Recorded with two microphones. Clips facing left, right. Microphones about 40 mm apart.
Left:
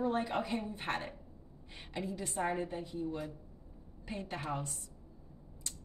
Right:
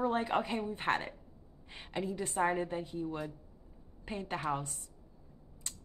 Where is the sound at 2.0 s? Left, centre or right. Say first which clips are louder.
Right 4 dB; right.